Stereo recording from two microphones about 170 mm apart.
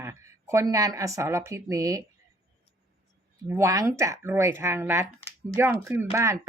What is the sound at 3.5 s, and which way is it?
Speech, 15° right (ahead or behind).